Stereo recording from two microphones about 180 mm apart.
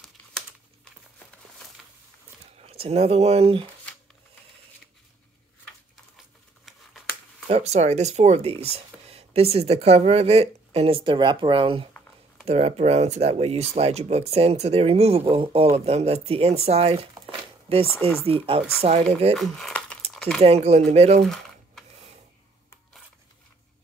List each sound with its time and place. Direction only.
0.2 s crumpling: 10° left (ahead or behind)
1.8 s a sound: centre (ahead or behind)
2.7 s speech: 35° right (ahead or behind)
6.1 s a sound: centre (ahead or behind)
7.4 s speech: 35° right (ahead or behind)
19.3 s speech: centre (ahead or behind)
20.2 s a sound: 5° left (ahead or behind)
20.4 s speech: 35° right (ahead or behind)
21.2 s typing: centre (ahead or behind)